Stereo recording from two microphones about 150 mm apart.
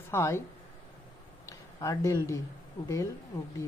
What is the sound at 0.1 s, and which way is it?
Speech, 20° left (ahead or behind).